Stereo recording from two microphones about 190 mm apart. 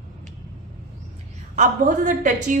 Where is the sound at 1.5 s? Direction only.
40° right (ahead or behind).